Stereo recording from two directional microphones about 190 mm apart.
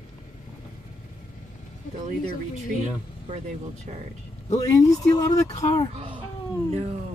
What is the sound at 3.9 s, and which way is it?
Speech, 35° right (ahead or behind).